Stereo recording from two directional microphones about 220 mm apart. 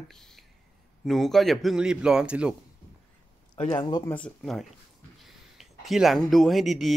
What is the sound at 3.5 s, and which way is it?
Speech, 20° left (ahead or behind).